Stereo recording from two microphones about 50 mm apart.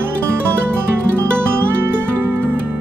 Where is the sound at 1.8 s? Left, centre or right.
Right.